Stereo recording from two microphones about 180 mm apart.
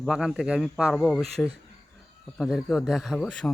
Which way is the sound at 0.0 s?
5° right (ahead or behind).